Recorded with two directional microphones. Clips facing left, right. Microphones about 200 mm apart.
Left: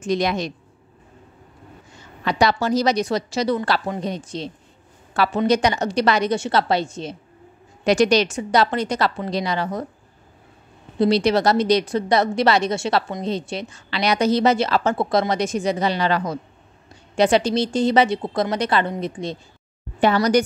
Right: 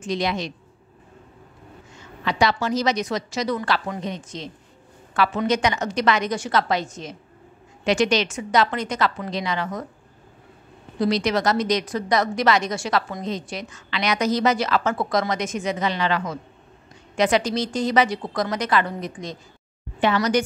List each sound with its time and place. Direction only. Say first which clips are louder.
0.0 s speech: left 3 dB; 45° left (ahead or behind)
2.2 s a woman's voice: left 2 dB; 40° left (ahead or behind)
11.0 s a woman's voice: left 4 dB; 30° left (ahead or behind)